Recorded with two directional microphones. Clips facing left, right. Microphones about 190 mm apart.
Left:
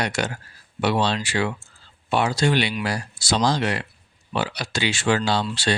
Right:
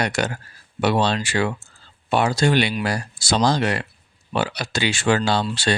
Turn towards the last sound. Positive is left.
turn(degrees=-50)  # may be behind; listen again after turning